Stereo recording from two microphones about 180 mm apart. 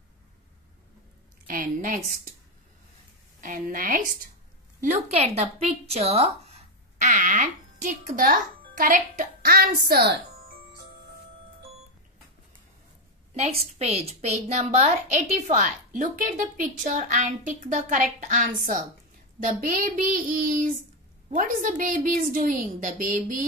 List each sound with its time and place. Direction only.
1.5 s a sound: 50° right (ahead or behind)
3.3 s a woman's voice: 50° right (ahead or behind)
4.8 s a woman's voice: 40° right (ahead or behind)
7.0 s a child's voice: 45° right (ahead or behind); by 10.2 s 65° right (ahead or behind)
13.3 s a woman's voice: 35° right (ahead or behind)